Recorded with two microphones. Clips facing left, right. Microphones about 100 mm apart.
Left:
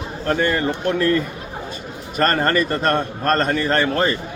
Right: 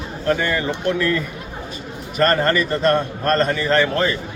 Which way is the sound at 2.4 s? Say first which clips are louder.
Right 1 dB; 40° left (ahead or behind).